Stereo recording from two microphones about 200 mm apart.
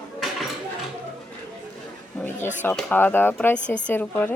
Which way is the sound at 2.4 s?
40° left (ahead or behind).